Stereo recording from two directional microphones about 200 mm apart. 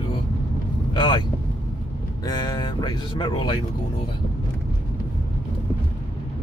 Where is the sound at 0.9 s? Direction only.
25° left (ahead or behind).